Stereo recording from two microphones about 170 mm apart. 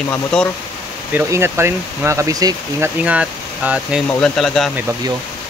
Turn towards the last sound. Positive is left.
turn(degrees=0)  # may be behind; listen again after turning